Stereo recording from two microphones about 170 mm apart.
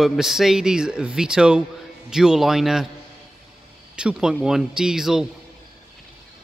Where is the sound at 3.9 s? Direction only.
5° right (ahead or behind).